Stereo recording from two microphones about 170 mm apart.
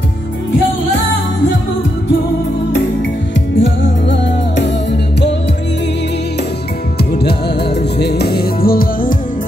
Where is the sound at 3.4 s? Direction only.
90° left.